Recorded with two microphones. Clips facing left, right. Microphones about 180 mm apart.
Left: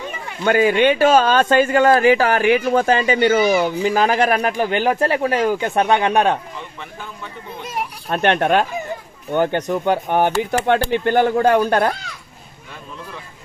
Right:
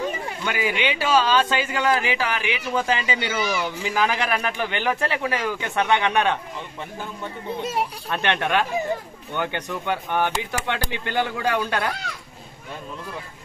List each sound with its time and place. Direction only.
0.4 s speech: 50° left (ahead or behind)
8.1 s speech: 45° left (ahead or behind)